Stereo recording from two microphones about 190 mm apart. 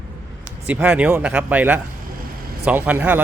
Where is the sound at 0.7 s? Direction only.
5° right (ahead or behind).